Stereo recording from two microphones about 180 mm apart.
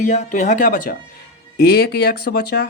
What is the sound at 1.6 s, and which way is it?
Speech, 60° left (ahead or behind).